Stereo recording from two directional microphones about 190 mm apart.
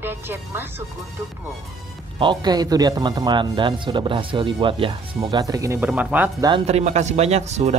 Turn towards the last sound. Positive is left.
turn(degrees=-35)  # may be behind; listen again after turning